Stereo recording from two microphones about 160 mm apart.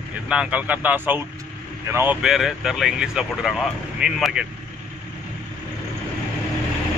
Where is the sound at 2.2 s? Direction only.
Centre (ahead or behind).